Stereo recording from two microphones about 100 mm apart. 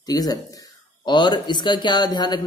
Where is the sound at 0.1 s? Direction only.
40° left (ahead or behind).